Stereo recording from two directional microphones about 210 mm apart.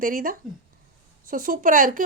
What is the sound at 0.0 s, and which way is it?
Speech, 40° right (ahead or behind).